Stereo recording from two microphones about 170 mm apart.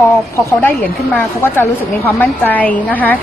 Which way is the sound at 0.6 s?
10° left (ahead or behind).